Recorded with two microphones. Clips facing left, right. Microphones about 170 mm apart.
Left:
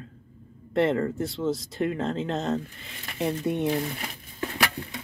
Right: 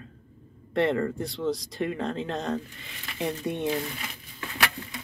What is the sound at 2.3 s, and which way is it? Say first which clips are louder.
Speech: left 3 dB; 25° left (ahead or behind).